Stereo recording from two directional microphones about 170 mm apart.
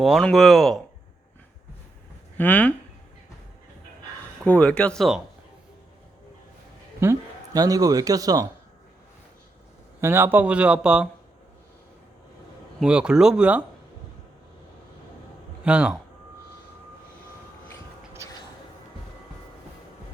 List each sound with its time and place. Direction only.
0.0 s speech: centre (ahead or behind)
2.4 s speech: 10° left (ahead or behind)
4.4 s speech: 5° left (ahead or behind)
7.0 s a man's voice: 20° right (ahead or behind)
10.0 s speech: 15° right (ahead or behind)
12.8 s speech: 5° right (ahead or behind)
15.6 s speech: 5° right (ahead or behind)